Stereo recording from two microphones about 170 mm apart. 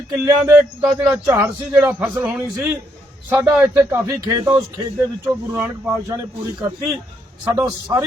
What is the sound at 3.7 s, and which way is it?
A man's voice, 15° right (ahead or behind).